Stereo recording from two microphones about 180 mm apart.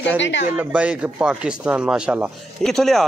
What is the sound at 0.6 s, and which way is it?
Speech, 5° right (ahead or behind).